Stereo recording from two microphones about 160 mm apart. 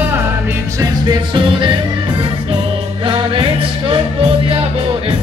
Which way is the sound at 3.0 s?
30° right (ahead or behind).